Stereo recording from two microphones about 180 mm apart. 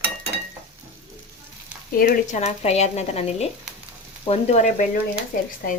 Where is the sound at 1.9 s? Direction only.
55° left (ahead or behind).